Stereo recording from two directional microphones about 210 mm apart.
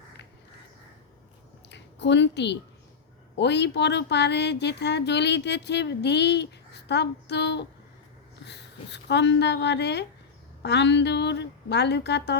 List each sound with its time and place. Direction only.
1.7 s a woman's voice: 55° left (ahead or behind)